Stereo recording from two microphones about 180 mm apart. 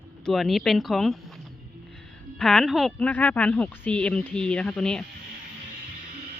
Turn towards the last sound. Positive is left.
turn(degrees=5)  # may be behind; listen again after turning